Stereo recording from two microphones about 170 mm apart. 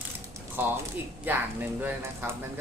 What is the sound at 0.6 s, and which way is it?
Speech, 10° right (ahead or behind).